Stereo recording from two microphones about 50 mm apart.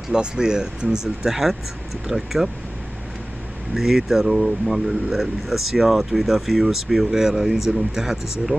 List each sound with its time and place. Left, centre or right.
0.1 s speech: centre
3.7 s speech: centre